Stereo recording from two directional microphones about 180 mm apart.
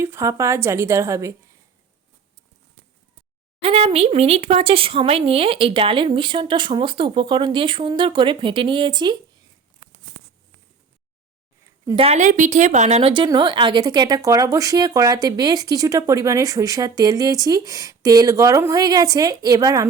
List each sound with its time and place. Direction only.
0.0 s a woman's voice: 15° right (ahead or behind)
3.6 s a woman's voice: 35° right (ahead or behind)
11.9 s a woman's voice: 35° right (ahead or behind); by 19.9 s 20° right (ahead or behind)